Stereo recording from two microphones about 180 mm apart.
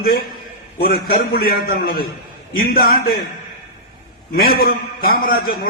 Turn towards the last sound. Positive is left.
turn(degrees=50)  # may be behind; listen again after turning